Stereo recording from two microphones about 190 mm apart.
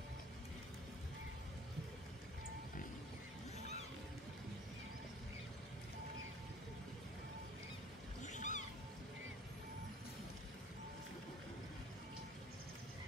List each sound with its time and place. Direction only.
3.5 s boat: 35° left (ahead or behind)
8.2 s cat: 40° left (ahead or behind)